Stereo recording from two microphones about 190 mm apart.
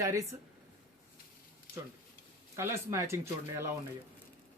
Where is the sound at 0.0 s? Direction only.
15° right (ahead or behind).